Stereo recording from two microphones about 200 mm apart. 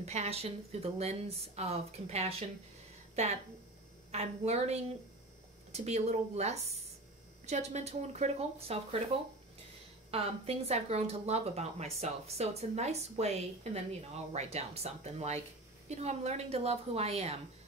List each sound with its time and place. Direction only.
0.0 s speech: 35° right (ahead or behind)